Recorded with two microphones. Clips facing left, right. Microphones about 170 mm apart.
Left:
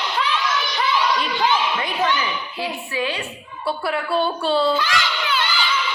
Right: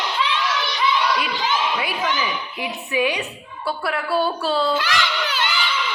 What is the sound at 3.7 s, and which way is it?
A woman's voice, centre (ahead or behind).